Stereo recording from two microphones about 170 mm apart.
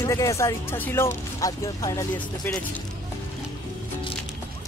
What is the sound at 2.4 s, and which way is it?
Speech, 5° left (ahead or behind).